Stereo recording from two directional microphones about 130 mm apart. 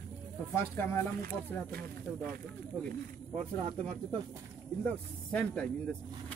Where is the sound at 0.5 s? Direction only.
20° left (ahead or behind).